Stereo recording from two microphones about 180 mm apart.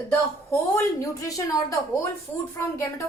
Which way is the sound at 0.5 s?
15° left (ahead or behind).